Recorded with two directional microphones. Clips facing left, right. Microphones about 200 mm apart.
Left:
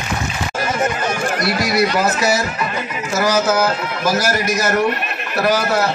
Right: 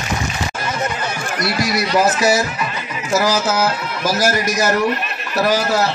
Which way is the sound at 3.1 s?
55° left (ahead or behind).